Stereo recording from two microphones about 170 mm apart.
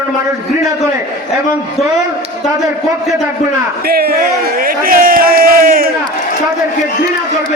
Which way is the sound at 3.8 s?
65° right (ahead or behind).